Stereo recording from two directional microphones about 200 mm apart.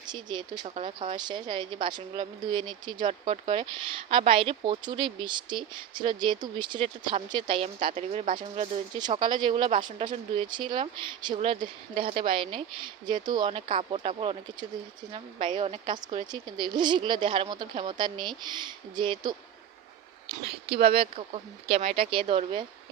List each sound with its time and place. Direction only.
0.0 s speech: 20° right (ahead or behind)
9.0 s speech: 20° right (ahead or behind)
20.7 s speech: 30° right (ahead or behind)